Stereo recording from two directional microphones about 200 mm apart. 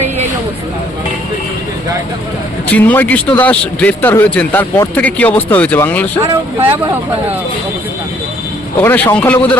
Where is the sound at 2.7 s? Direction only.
10° left (ahead or behind).